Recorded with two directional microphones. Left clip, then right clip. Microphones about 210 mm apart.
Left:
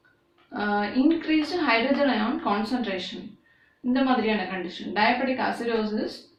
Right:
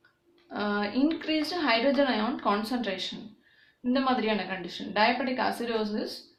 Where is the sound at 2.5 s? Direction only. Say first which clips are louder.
Right 1 dB; 50° right (ahead or behind).